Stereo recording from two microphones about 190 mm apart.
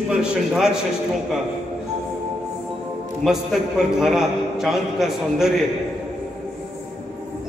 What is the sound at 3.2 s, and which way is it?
A man's voice, centre (ahead or behind).